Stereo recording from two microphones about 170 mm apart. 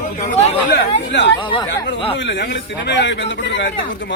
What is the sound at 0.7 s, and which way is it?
A man's voice, 90° left.